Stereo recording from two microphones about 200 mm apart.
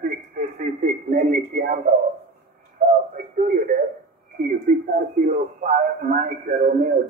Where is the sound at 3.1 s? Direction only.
40° right (ahead or behind).